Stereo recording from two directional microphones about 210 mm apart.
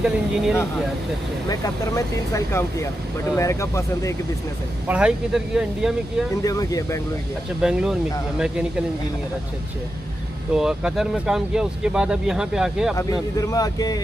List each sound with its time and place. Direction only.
0.0 s speech: 5° right (ahead or behind)
1.5 s speech: 15° left (ahead or behind)
4.8 s speech: 5° right (ahead or behind)
6.4 s speech: 15° left (ahead or behind)
7.6 s speech: 5° right (ahead or behind)
10.5 s speech: 5° right (ahead or behind)
12.9 s speech: 15° left (ahead or behind)